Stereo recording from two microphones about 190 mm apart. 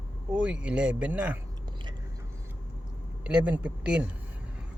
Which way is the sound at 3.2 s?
5° right (ahead or behind).